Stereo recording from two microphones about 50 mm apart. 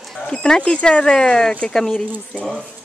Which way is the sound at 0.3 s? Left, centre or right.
Centre.